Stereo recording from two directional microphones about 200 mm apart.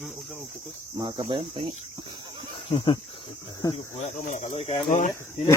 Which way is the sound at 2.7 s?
25° left (ahead or behind).